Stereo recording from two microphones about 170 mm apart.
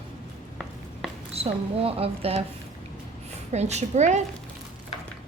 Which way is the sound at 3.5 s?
40° right (ahead or behind).